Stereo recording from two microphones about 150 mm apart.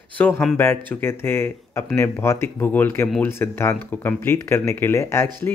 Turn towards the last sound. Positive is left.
turn(degrees=20)  # may be behind; listen again after turning